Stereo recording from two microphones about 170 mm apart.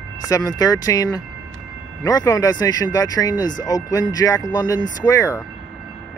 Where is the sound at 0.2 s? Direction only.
20° left (ahead or behind).